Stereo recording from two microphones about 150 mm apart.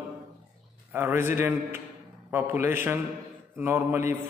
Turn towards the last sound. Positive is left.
turn(degrees=-15)  # may be behind; listen again after turning